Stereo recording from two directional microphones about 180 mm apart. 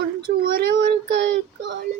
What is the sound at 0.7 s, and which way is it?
A child's voice, 75° right (ahead or behind).